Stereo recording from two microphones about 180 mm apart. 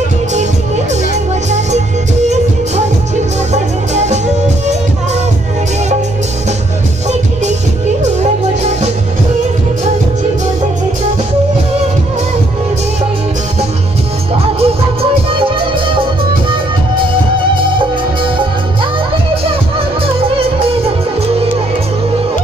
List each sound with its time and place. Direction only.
3.5 s music: 40° right (ahead or behind)
14.6 s music: 30° right (ahead or behind)
20.2 s music: 30° right (ahead or behind)